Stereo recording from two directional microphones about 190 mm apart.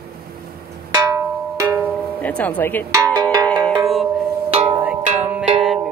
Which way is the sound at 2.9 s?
15° right (ahead or behind).